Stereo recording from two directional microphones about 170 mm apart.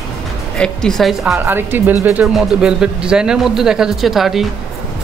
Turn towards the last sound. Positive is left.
turn(degrees=0)  # may be behind; listen again after turning